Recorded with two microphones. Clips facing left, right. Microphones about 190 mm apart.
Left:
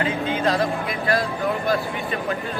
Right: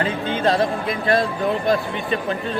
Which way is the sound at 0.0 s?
30° right (ahead or behind).